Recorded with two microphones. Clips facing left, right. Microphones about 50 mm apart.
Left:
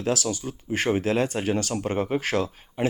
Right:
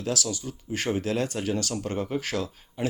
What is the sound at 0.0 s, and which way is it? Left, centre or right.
Speech, left.